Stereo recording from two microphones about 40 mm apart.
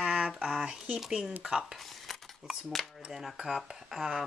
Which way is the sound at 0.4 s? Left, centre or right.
Right.